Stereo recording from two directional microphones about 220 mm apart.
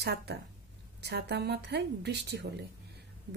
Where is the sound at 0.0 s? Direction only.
50° right (ahead or behind).